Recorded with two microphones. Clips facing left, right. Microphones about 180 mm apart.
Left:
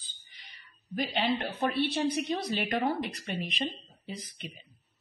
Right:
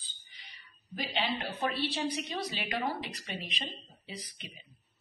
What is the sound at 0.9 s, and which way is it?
A woman's voice, 55° left (ahead or behind).